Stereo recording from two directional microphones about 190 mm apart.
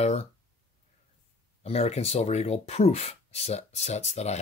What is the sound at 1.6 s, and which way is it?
Speech, 35° left (ahead or behind).